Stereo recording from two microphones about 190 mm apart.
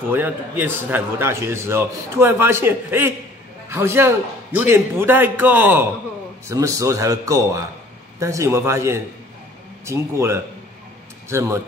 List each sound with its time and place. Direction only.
0.1 s a man's voice: 10° right (ahead or behind)